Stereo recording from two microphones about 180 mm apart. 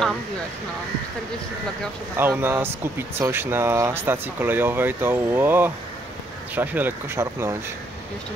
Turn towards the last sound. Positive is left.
turn(degrees=-15)  # may be behind; listen again after turning